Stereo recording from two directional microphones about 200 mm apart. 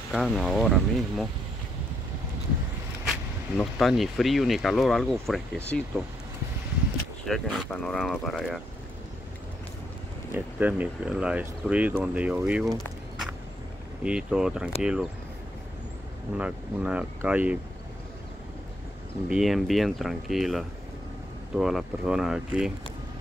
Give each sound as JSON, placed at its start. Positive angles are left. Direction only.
{"t": 0.1, "sound": "speech", "side_deg": 0}
{"t": 3.1, "sound": "speech", "side_deg": 0}
{"t": 7.2, "sound": "speech", "side_deg": 0}
{"t": 10.3, "sound": "speech", "side_deg": -10}
{"t": 14.0, "sound": "speech", "side_deg": -5}
{"t": 16.3, "sound": "speech", "side_deg": -5}
{"t": 19.2, "sound": "speech", "side_deg": 0}